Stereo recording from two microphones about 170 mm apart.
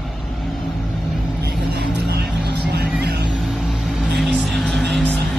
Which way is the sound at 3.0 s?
75° right (ahead or behind).